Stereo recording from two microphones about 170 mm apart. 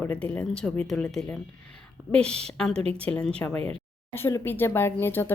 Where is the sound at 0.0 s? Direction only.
10° left (ahead or behind).